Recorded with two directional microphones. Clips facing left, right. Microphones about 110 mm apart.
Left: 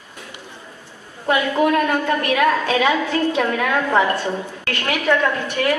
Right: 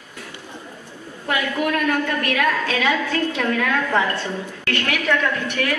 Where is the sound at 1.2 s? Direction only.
25° left (ahead or behind).